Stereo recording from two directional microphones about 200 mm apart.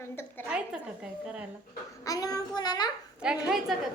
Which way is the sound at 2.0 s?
15° left (ahead or behind).